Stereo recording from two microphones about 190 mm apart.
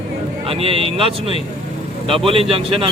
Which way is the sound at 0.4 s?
30° right (ahead or behind).